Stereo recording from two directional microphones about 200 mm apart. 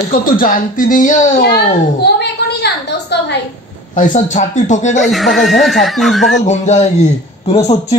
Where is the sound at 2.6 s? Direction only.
55° left (ahead or behind).